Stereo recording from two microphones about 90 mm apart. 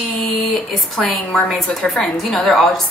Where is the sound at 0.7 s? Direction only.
5° left (ahead or behind).